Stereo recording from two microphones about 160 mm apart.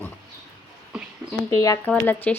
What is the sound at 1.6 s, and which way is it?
Speech, 20° left (ahead or behind).